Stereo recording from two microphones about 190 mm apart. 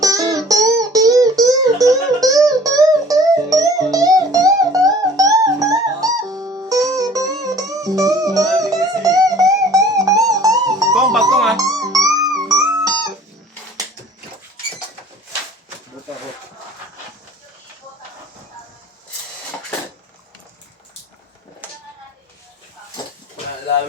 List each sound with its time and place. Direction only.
0.0 s music: 20° right (ahead or behind)
11.3 s music: centre (ahead or behind)
11.5 s music: 20° right (ahead or behind)